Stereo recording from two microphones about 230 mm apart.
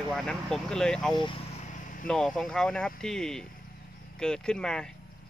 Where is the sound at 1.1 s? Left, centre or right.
Left.